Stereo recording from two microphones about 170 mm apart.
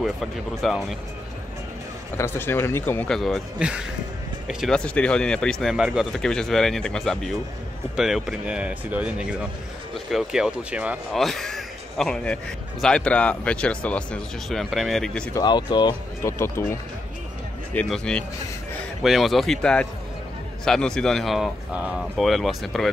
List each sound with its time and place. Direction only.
0.0 s speech: centre (ahead or behind)
2.1 s speech: 15° left (ahead or behind)
15.3 s speech: 25° left (ahead or behind)
16.2 s speech: 15° left (ahead or behind)
17.7 s speech: 5° left (ahead or behind)